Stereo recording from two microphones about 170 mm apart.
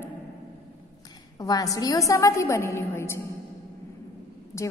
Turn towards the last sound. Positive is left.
turn(degrees=15)  # may be behind; listen again after turning